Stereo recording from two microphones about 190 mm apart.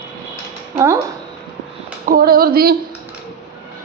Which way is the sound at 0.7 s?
15° right (ahead or behind).